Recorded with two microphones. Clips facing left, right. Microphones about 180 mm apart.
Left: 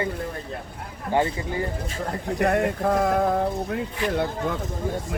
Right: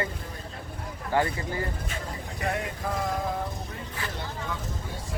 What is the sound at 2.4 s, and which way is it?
Speech, 55° left (ahead or behind).